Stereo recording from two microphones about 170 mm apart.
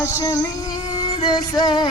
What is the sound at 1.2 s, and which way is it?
Music, 25° left (ahead or behind).